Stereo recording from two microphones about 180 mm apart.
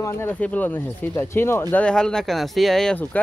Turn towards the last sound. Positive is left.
turn(degrees=5)  # may be behind; listen again after turning